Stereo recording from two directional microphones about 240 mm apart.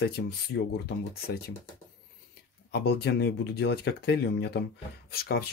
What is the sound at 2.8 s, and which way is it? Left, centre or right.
Speech, left.